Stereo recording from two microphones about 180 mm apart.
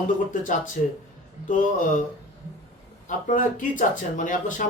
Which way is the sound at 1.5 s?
45° left (ahead or behind).